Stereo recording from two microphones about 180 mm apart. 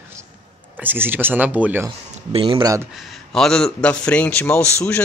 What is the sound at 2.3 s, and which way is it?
Speech, 30° right (ahead or behind).